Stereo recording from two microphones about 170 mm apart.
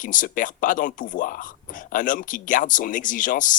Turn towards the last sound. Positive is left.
turn(degrees=50)  # may be behind; listen again after turning